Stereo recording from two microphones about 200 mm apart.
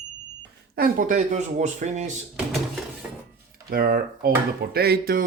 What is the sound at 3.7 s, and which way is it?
A man's voice, 50° right (ahead or behind).